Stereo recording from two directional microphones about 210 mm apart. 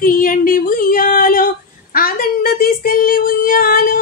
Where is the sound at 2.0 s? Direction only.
45° left (ahead or behind).